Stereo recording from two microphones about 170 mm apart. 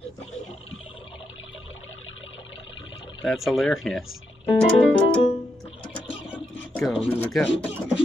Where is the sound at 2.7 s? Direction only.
30° left (ahead or behind).